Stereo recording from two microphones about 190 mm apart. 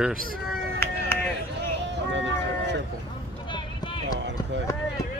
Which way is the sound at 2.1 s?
70° right (ahead or behind).